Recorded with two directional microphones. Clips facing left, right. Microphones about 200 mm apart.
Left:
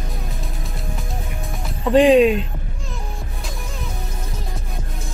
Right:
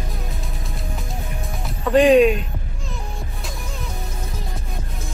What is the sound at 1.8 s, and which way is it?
Speech, 25° left (ahead or behind).